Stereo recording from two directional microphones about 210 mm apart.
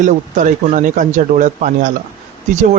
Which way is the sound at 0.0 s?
35° right (ahead or behind).